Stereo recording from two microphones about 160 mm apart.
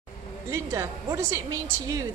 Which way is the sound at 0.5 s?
20° right (ahead or behind).